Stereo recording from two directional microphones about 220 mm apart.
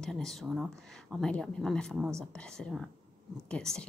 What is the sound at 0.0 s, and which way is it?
A woman's voice, centre (ahead or behind).